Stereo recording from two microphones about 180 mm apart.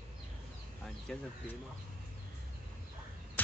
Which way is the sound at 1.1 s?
5° left (ahead or behind).